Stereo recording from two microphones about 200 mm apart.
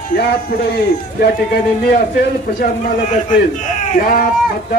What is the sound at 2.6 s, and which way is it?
A man's voice, 40° left (ahead or behind).